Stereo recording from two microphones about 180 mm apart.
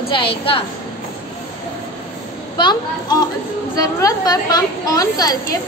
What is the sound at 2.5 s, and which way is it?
A woman's voice, 25° left (ahead or behind).